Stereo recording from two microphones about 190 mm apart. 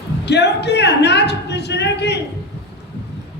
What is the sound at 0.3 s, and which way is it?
A man's voice, 60° left (ahead or behind).